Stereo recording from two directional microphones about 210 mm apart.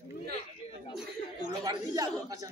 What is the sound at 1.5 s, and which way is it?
A man's voice, 15° right (ahead or behind).